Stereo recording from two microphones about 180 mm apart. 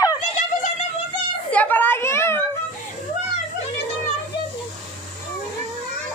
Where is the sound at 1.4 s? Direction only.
10° left (ahead or behind).